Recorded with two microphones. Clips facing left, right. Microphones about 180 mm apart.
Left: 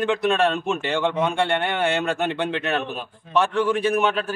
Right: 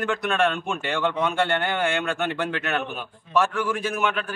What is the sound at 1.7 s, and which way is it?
A man's voice, 30° left (ahead or behind).